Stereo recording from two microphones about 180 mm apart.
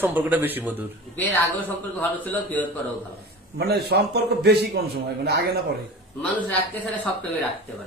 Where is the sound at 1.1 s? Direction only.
10° left (ahead or behind).